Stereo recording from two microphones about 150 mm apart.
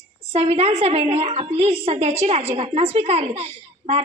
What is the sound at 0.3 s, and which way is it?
A woman's voice, 40° right (ahead or behind).